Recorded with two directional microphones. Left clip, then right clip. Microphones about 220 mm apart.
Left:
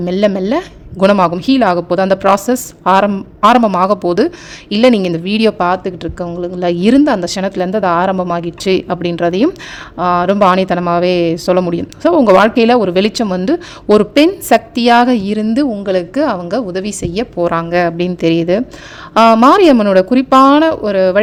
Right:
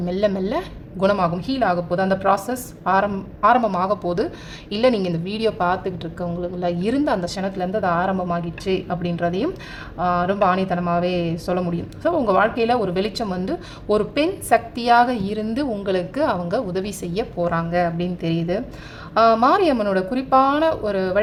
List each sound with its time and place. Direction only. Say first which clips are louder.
0.0 s speech: left 8 dB; 35° left (ahead or behind)